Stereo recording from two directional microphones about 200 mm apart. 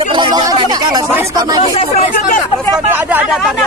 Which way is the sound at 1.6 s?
30° left (ahead or behind).